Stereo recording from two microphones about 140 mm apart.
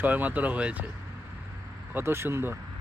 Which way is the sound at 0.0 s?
10° right (ahead or behind).